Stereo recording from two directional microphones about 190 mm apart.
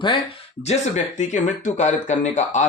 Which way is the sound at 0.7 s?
40° left (ahead or behind).